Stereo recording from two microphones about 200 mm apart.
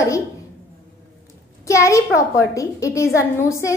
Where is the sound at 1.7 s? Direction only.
15° left (ahead or behind).